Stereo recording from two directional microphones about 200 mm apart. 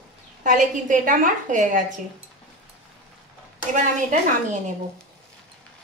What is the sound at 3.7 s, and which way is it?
Speech, 40° right (ahead or behind).